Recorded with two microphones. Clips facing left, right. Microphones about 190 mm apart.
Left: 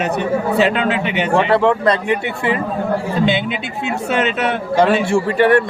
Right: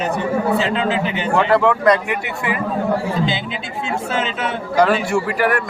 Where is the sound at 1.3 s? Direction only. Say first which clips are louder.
Left 1 dB; 30° left (ahead or behind).